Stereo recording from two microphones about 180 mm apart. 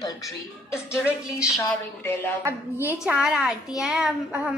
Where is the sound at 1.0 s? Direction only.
5° right (ahead or behind).